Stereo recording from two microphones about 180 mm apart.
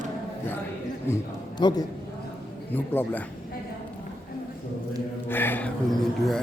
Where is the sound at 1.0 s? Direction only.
20° left (ahead or behind).